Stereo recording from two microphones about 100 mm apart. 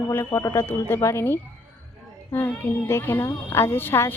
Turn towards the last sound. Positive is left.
turn(degrees=20)  # may be behind; listen again after turning